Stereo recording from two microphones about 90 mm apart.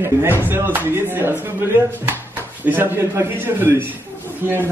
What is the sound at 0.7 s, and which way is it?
A man's voice, 25° right (ahead or behind).